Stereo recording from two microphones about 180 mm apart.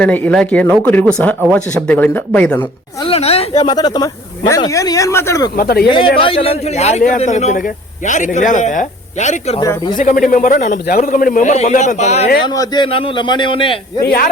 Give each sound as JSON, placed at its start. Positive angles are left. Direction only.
{"t": 0.0, "sound": "speech", "side_deg": 5}
{"t": 3.0, "sound": "a woman's voice", "side_deg": 35}
{"t": 3.7, "sound": "speech", "side_deg": 25}
{"t": 5.5, "sound": "speech", "side_deg": 60}
{"t": 6.1, "sound": "a man's voice", "side_deg": 30}
{"t": 9.6, "sound": "a man's voice", "side_deg": 25}
{"t": 10.0, "sound": "a man's voice", "side_deg": 45}
{"t": 12.5, "sound": "a man's voice", "side_deg": 25}